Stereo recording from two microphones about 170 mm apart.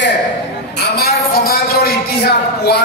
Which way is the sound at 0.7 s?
65° left (ahead or behind).